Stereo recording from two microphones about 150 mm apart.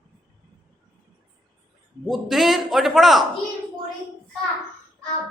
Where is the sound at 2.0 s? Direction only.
Centre (ahead or behind).